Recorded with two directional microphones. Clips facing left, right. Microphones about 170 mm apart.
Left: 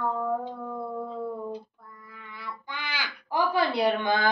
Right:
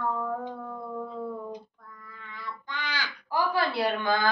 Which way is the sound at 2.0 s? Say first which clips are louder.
Even; 10° left (ahead or behind).